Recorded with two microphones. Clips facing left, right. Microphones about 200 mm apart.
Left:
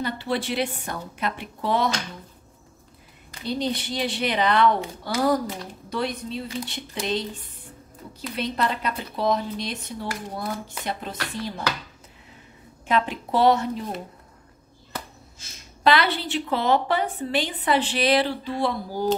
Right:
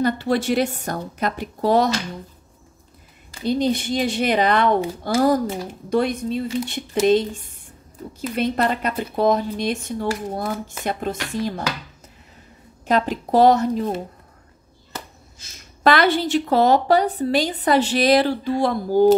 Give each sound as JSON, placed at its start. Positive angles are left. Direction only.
{"t": 0.0, "sound": "a woman's voice", "side_deg": -45}
{"t": 3.4, "sound": "speech", "side_deg": -45}
{"t": 8.4, "sound": "speech", "side_deg": -50}
{"t": 12.8, "sound": "a woman's voice", "side_deg": -40}
{"t": 15.8, "sound": "a woman's voice", "side_deg": -45}